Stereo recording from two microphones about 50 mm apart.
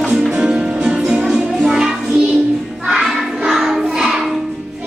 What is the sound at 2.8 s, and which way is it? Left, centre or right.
Child singing, centre.